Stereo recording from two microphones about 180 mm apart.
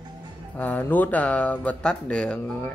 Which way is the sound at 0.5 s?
10° left (ahead or behind).